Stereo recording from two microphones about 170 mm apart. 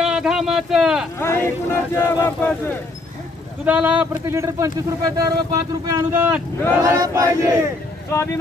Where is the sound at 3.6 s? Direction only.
5° right (ahead or behind).